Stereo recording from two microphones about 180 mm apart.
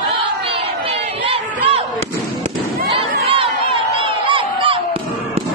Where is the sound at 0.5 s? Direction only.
30° right (ahead or behind).